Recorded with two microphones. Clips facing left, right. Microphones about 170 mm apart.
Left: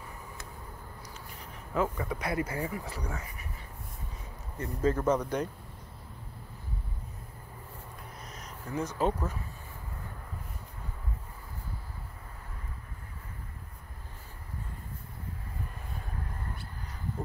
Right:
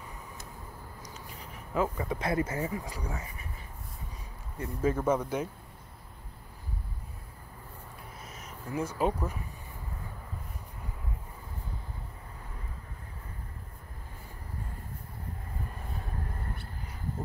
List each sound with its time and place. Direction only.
2.0 s speech: 25° right (ahead or behind)
4.6 s speech: 10° right (ahead or behind)
8.3 s speech: 5° right (ahead or behind)